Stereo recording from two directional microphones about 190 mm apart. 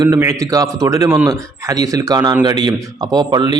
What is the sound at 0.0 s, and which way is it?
A man's voice, 15° right (ahead or behind).